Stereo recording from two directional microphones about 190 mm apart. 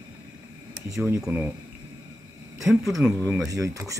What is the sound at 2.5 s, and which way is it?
Speech, centre (ahead or behind).